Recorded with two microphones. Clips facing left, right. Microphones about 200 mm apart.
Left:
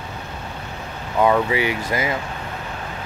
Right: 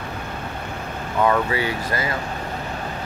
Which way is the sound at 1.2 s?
15° left (ahead or behind).